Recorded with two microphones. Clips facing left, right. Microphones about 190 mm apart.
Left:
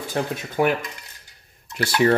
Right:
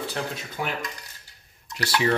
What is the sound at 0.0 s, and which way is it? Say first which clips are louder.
Speech: left 5 dB; 50° left (ahead or behind).